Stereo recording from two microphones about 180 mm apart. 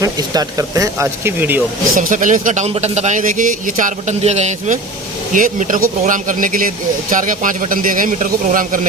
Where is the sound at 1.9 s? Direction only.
45° right (ahead or behind).